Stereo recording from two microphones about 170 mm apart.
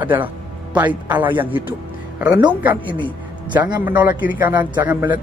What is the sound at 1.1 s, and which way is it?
Speech, 10° right (ahead or behind).